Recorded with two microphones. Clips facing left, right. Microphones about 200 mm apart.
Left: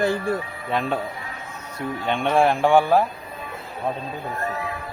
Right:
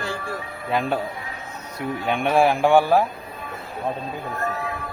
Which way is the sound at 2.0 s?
10° right (ahead or behind).